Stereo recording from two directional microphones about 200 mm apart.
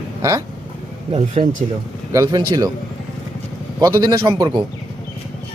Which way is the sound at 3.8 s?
15° right (ahead or behind).